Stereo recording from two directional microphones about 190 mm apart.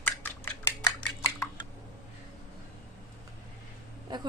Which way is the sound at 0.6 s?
10° left (ahead or behind).